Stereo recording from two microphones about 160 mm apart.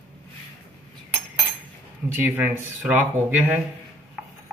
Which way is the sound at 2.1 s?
10° right (ahead or behind).